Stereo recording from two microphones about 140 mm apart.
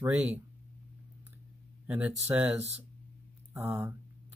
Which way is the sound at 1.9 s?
10° right (ahead or behind).